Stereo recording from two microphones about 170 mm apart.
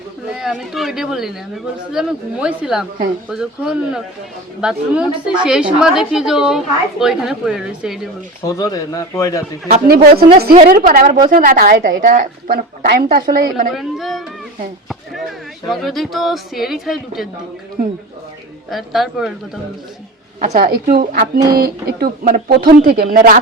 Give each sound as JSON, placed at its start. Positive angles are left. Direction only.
{"t": 0.3, "sound": "speech", "side_deg": -5}
{"t": 8.4, "sound": "speech", "side_deg": 20}
{"t": 9.8, "sound": "speech", "side_deg": -65}
{"t": 13.7, "sound": "speech", "side_deg": 0}
{"t": 14.8, "sound": "a sound", "side_deg": 0}
{"t": 15.7, "sound": "speech", "side_deg": 0}
{"t": 18.7, "sound": "speech", "side_deg": 0}
{"t": 20.4, "sound": "speech", "side_deg": -55}